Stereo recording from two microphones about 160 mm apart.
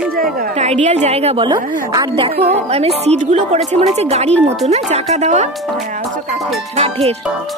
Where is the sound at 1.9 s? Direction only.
30° right (ahead or behind); by 6.4 s 55° right (ahead or behind).